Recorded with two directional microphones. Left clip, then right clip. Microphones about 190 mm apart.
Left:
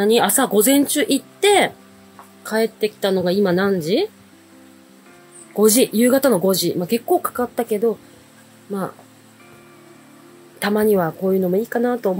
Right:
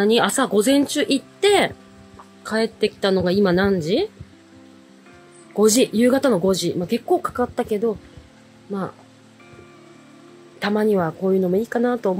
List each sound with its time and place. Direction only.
0.0 s a woman's voice: 15° right (ahead or behind)
5.5 s speech: 10° right (ahead or behind)
10.6 s speech: 5° right (ahead or behind)